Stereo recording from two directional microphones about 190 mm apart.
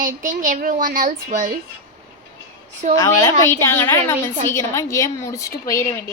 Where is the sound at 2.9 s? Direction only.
15° left (ahead or behind).